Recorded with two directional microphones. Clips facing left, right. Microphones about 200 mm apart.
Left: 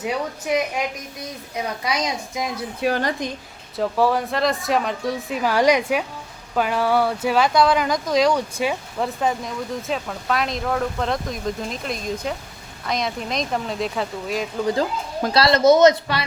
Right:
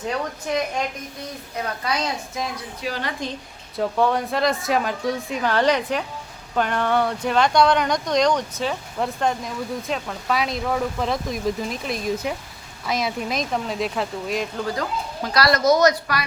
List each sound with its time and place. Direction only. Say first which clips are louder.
0.0 s a woman's voice: left 1 dB; 10° left (ahead or behind)
2.8 s a woman's voice: left 7 dB; 55° left (ahead or behind)
3.8 s speech: left 1 dB; centre (ahead or behind)
15.3 s speech: left 3 dB; 25° left (ahead or behind)